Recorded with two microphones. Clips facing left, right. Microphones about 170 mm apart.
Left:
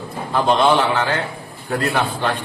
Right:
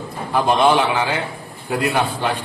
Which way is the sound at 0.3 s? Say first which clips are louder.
Even; 10° right (ahead or behind).